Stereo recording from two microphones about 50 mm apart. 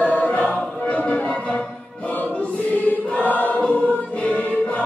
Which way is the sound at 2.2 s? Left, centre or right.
Left.